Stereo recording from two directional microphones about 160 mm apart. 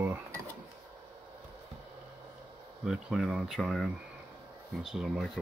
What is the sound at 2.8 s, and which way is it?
Speech, centre (ahead or behind).